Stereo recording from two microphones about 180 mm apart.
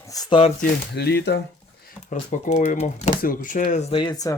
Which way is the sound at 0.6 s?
65° left (ahead or behind).